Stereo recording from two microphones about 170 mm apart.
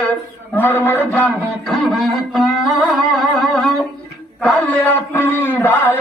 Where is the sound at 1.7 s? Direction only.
Centre (ahead or behind).